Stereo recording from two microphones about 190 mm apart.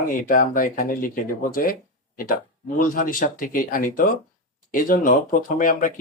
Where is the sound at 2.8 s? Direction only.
45° left (ahead or behind).